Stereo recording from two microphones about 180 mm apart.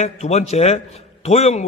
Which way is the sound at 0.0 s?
40° left (ahead or behind).